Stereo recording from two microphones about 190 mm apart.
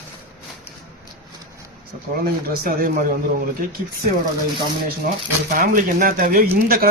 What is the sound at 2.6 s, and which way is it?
Speech, 50° right (ahead or behind).